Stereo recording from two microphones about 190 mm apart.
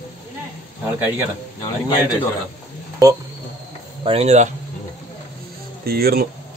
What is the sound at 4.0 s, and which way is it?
Speech, 30° right (ahead or behind).